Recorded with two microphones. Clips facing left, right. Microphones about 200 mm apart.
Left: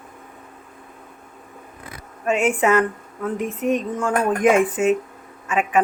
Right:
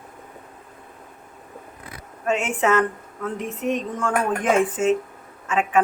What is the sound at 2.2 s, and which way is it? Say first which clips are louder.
A woman's voice: left 3 dB; 10° left (ahead or behind).